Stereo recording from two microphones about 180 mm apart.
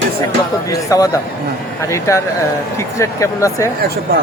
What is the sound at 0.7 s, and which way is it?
Speech, 20° left (ahead or behind).